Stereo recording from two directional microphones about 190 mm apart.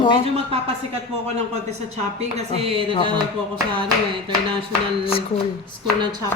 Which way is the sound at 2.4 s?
35° right (ahead or behind).